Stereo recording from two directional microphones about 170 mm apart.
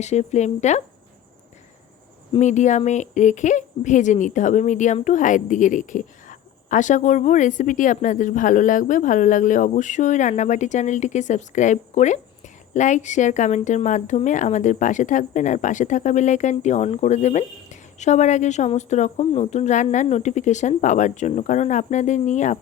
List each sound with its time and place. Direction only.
0.0 s speech: 40° left (ahead or behind)
2.4 s speech: 45° left (ahead or behind)